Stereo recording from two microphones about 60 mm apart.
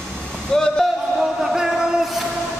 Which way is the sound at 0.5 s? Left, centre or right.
Centre.